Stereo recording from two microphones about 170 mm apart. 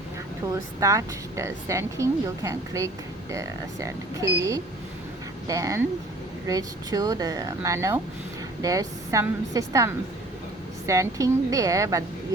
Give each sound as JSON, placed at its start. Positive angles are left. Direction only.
{"t": 0.5, "sound": "speech", "side_deg": -20}